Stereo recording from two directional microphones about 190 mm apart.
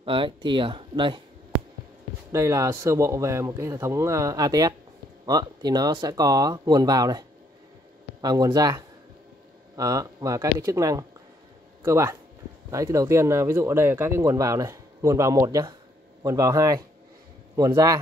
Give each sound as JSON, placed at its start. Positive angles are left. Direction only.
{"t": 0.0, "sound": "speech", "side_deg": -25}
{"t": 2.3, "sound": "speech", "side_deg": -15}